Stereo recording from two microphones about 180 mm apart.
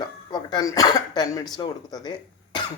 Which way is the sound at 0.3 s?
25° left (ahead or behind).